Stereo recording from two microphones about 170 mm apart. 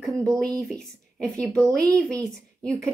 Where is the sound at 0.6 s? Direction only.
Centre (ahead or behind).